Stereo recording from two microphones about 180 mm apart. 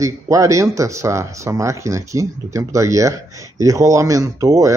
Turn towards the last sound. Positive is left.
turn(degrees=-20)  # may be behind; listen again after turning